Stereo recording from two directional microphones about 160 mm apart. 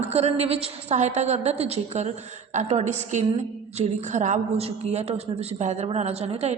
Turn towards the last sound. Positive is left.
turn(degrees=-40)  # may be behind; listen again after turning